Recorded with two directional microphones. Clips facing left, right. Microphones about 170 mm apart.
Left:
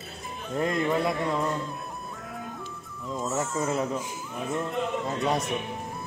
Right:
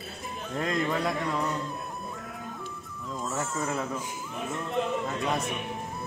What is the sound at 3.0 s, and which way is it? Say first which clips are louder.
Music: left 4 dB; centre (ahead or behind).